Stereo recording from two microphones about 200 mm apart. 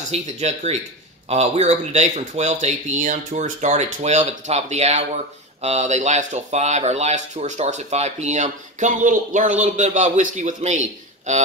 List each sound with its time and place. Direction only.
0.1 s speech: 35° right (ahead or behind)